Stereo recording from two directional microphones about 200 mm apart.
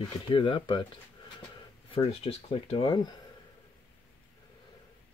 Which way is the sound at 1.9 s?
30° left (ahead or behind).